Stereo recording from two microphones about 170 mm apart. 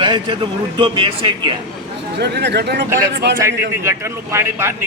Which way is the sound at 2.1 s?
80° right.